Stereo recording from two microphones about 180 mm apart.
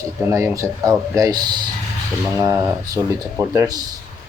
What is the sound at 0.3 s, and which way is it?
Speech, 15° right (ahead or behind).